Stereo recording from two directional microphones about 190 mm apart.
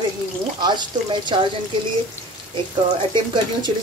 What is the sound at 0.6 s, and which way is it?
Speech, 25° right (ahead or behind).